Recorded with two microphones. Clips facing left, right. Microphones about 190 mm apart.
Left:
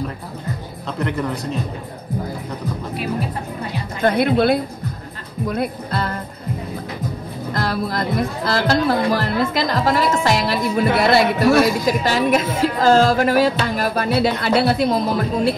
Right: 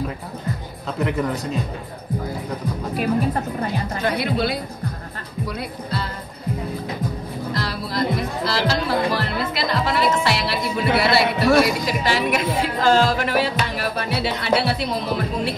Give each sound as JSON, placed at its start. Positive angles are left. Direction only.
{"t": 0.9, "sound": "speech", "side_deg": -5}
{"t": 4.0, "sound": "speech", "side_deg": 55}
{"t": 7.5, "sound": "speech", "side_deg": 50}